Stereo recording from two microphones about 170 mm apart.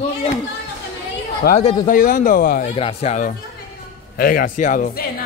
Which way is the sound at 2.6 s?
35° left (ahead or behind).